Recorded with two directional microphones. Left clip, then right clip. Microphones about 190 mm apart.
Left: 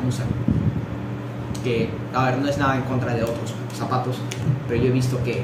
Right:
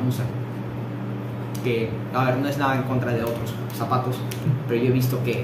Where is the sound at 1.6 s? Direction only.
5° right (ahead or behind).